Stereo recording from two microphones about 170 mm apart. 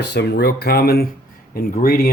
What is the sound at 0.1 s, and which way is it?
Speech, 75° left (ahead or behind).